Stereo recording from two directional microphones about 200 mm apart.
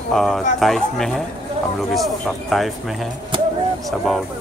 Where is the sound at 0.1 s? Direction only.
Centre (ahead or behind).